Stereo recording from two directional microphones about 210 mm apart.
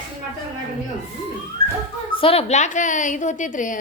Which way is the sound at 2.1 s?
25° left (ahead or behind).